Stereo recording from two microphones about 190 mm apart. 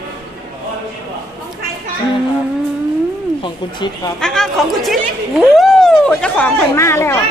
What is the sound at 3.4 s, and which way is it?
Speech, 25° left (ahead or behind).